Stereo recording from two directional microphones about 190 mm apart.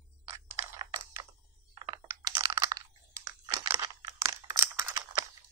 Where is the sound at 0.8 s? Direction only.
20° right (ahead or behind).